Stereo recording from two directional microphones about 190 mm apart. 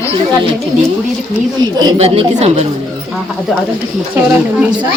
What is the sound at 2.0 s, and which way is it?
Speech, 35° right (ahead or behind).